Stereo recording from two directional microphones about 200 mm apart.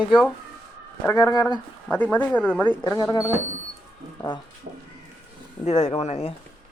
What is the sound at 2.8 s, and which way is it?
Speech, 20° left (ahead or behind).